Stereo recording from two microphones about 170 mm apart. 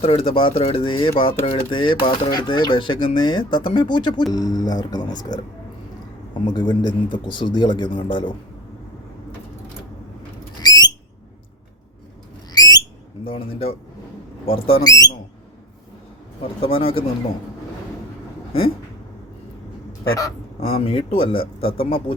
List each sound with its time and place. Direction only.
0.0 s speech: 35° left (ahead or behind)
6.5 s speech: 25° left (ahead or behind)
10.6 s a sound: 25° left (ahead or behind)
12.5 s squawk: 25° left (ahead or behind)
13.2 s speech: 35° left (ahead or behind)
14.8 s speech: 20° left (ahead or behind)
16.4 s speech: 35° left (ahead or behind)
20.6 s speech: 35° left (ahead or behind)